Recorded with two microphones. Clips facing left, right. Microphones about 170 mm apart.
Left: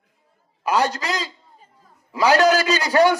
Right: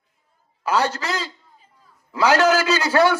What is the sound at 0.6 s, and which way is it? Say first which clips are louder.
Speech: left 1 dB; 15° left (ahead or behind).